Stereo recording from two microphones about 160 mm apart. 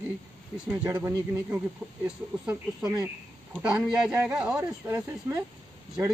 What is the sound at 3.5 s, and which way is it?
Speech, 5° right (ahead or behind).